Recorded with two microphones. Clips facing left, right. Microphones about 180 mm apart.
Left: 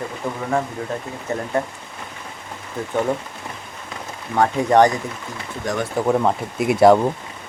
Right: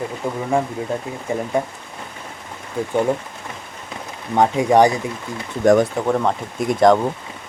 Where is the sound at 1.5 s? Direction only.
10° right (ahead or behind).